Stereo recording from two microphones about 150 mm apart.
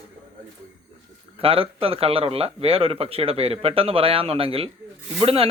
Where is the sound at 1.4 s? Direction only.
40° right (ahead or behind).